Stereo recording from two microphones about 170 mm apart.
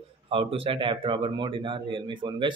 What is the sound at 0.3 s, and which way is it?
Speech, 35° right (ahead or behind).